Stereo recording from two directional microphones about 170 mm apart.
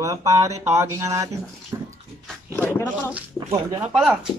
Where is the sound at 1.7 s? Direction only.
20° right (ahead or behind).